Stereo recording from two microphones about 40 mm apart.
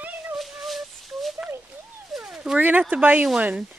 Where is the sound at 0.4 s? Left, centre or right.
Centre.